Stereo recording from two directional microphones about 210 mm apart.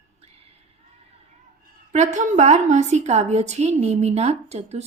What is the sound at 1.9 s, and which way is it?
A woman's voice, 35° right (ahead or behind).